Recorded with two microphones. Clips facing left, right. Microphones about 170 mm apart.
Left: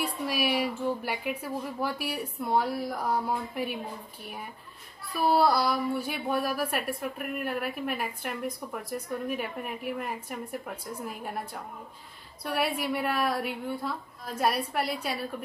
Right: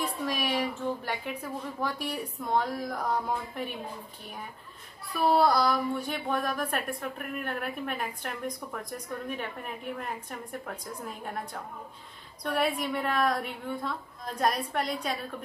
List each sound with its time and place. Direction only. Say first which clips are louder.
0.0 s a woman's voice: left 2 dB; 10° left (ahead or behind)
5.1 s a woman's voice: even; centre (ahead or behind)